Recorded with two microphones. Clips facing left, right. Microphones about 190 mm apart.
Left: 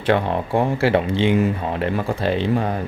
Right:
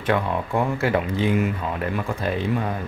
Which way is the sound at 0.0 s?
30° left (ahead or behind).